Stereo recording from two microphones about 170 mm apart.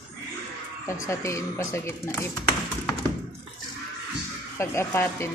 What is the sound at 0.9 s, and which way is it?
A woman's voice, 15° left (ahead or behind).